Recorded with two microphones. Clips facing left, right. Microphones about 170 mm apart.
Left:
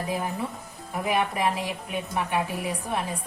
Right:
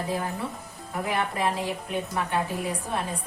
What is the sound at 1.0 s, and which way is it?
A woman's voice, 15° left (ahead or behind).